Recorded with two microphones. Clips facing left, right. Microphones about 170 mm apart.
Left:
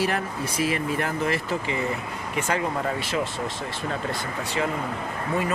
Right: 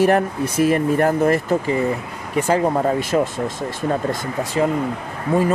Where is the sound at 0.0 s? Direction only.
50° right (ahead or behind).